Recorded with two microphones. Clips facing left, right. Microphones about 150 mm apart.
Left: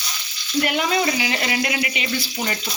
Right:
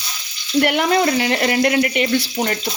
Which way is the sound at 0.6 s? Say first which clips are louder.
Right 4 dB; 60° right (ahead or behind).